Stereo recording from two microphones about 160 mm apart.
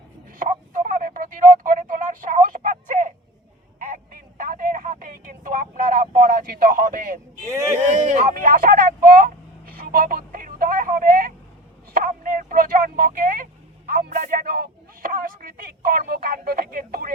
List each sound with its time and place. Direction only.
0.3 s a sound: 55° right (ahead or behind)
7.4 s speech: 15° right (ahead or behind)
7.8 s vehicle: 50° right (ahead or behind); by 17.1 s 65° right (ahead or behind)